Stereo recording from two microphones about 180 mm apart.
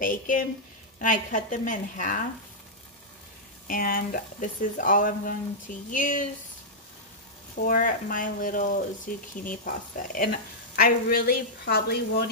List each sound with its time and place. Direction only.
0.0 s speech: 50° left (ahead or behind)
3.6 s speech: 50° left (ahead or behind)
7.6 s speech: 50° left (ahead or behind)